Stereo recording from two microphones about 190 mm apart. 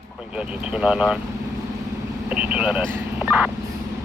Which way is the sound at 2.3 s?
5° right (ahead or behind).